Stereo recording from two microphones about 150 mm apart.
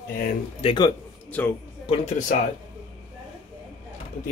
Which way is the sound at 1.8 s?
50° left (ahead or behind).